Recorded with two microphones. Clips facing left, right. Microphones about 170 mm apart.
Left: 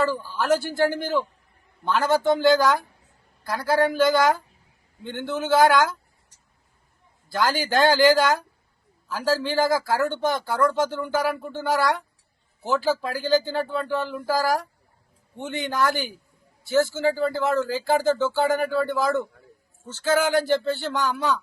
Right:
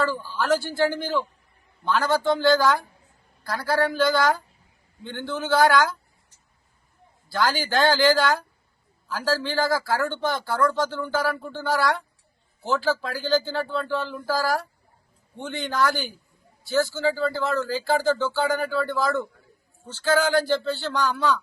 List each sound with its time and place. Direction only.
0.0 s speech: 20° left (ahead or behind)
2.0 s speech: 20° left (ahead or behind)
7.3 s speech: 20° left (ahead or behind)
12.8 s speech: 15° left (ahead or behind)